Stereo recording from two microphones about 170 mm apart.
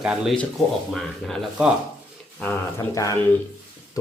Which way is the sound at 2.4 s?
15° left (ahead or behind).